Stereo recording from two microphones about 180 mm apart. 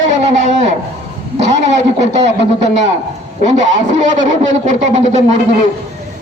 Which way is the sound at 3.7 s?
45° right (ahead or behind).